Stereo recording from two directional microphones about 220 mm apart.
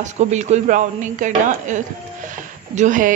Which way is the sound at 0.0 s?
30° right (ahead or behind).